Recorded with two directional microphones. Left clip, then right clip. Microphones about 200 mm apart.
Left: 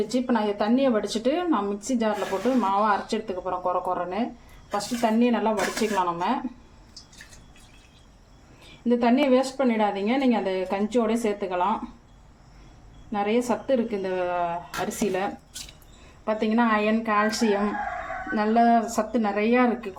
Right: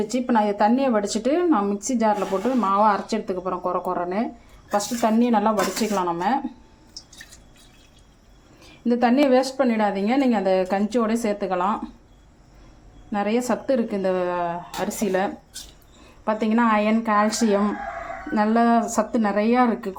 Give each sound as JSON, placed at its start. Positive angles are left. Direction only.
{"t": 0.1, "sound": "a woman's voice", "side_deg": -20}
{"t": 8.8, "sound": "a woman's voice", "side_deg": -25}
{"t": 13.1, "sound": "a woman's voice", "side_deg": -25}